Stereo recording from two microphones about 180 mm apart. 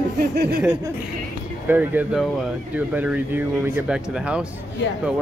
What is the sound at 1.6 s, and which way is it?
Speech, 10° right (ahead or behind).